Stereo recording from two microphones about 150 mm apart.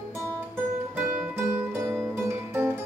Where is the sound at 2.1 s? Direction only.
15° right (ahead or behind).